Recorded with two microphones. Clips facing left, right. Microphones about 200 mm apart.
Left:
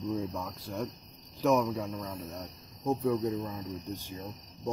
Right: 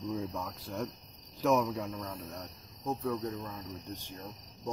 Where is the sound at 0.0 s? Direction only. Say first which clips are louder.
Left 3 dB; centre (ahead or behind).